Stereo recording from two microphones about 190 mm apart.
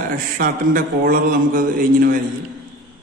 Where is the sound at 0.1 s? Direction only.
50° right (ahead or behind).